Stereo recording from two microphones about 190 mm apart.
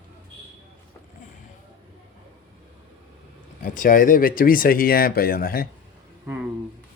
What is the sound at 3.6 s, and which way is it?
Speech, 45° left (ahead or behind).